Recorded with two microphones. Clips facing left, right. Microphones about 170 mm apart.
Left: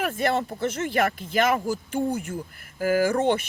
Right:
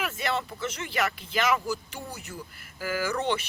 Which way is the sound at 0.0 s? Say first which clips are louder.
Left 6 dB; 50° left (ahead or behind).